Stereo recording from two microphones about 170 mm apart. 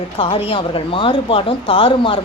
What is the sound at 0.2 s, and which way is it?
A woman's voice, 35° left (ahead or behind).